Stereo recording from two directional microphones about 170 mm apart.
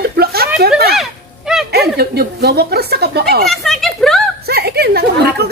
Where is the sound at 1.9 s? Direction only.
70° right (ahead or behind).